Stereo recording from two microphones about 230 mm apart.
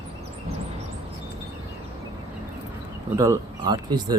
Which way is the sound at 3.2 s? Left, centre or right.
Centre.